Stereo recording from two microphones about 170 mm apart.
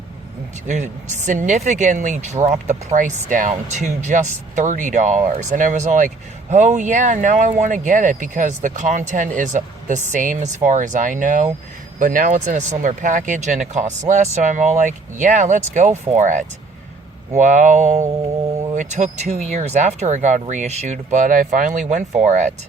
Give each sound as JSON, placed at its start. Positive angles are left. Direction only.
{"t": 0.7, "sound": "speech", "side_deg": -45}